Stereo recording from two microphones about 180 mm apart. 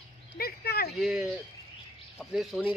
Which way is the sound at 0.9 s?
Centre (ahead or behind).